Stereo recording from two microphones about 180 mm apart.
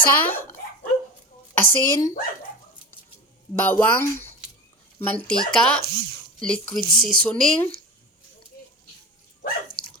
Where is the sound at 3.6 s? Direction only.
10° left (ahead or behind).